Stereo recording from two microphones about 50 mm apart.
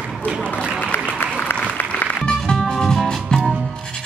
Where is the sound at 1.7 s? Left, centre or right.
Left.